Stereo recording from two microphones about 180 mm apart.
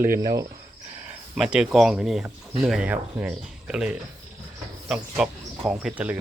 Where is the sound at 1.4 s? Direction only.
5° right (ahead or behind).